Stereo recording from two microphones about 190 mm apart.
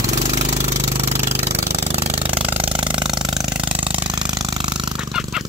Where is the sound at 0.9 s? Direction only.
35° right (ahead or behind).